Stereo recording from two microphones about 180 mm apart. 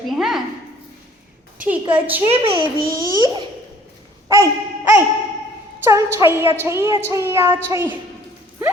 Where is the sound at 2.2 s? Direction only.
30° right (ahead or behind).